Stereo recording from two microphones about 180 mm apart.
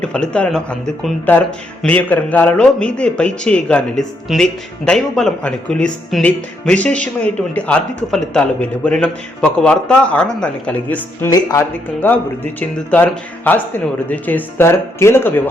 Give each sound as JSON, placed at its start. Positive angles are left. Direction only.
{"t": 0.0, "sound": "a man's voice", "side_deg": 5}
{"t": 11.3, "sound": "a man's voice", "side_deg": 20}